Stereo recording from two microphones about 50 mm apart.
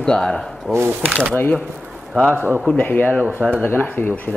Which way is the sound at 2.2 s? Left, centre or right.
Right.